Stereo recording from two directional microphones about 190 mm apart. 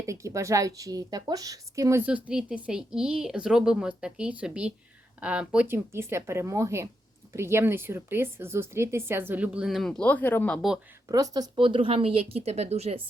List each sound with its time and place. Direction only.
0.0 s speech: 15° right (ahead or behind); by 10.8 s centre (ahead or behind)
11.1 s speech: 20° right (ahead or behind)